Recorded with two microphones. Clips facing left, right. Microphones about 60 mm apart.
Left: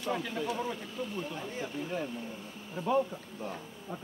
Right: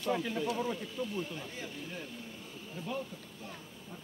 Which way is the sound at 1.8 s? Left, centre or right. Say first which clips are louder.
Left 8 dB; left.